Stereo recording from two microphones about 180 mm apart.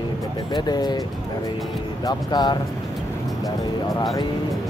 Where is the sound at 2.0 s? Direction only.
25° left (ahead or behind).